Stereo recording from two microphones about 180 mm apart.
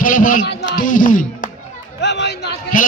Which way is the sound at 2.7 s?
50° left (ahead or behind).